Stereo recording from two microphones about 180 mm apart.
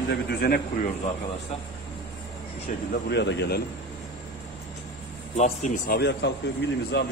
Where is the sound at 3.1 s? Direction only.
75° left (ahead or behind).